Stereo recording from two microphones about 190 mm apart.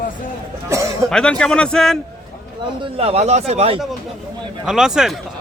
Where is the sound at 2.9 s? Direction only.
30° right (ahead or behind).